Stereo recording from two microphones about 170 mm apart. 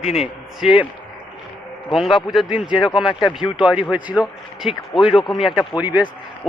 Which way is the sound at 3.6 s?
5° right (ahead or behind).